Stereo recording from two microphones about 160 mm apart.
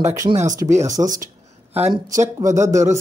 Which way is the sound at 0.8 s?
20° right (ahead or behind).